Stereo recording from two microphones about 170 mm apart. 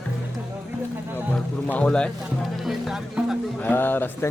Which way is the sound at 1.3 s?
5° left (ahead or behind).